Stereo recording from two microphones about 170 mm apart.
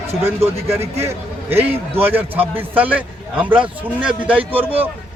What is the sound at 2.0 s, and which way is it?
A man's voice, 10° right (ahead or behind).